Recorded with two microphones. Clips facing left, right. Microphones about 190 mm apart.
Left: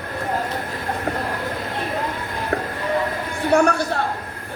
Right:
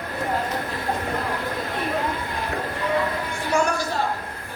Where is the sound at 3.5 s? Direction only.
60° left (ahead or behind).